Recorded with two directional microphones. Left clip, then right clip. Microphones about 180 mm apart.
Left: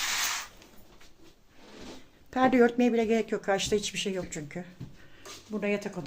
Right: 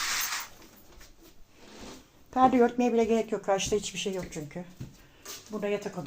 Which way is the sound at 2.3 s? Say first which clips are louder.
Right 1 dB; 20° left (ahead or behind).